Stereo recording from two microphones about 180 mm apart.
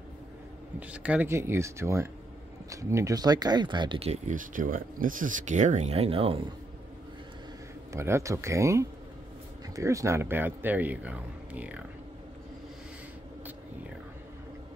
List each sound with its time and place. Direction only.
0.7 s a man's voice: 5° right (ahead or behind); by 6.4 s 30° right (ahead or behind)
7.9 s a man's voice: 15° right (ahead or behind)